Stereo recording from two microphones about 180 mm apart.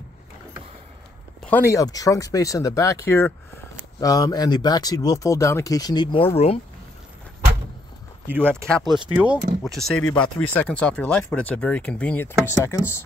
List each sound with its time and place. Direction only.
1.4 s speech: 10° left (ahead or behind); by 6.6 s 35° left (ahead or behind)
8.3 s speech: 10° right (ahead or behind)
8.6 s speech: centre (ahead or behind)